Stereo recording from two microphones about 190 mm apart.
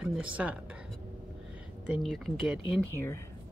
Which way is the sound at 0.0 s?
5° right (ahead or behind).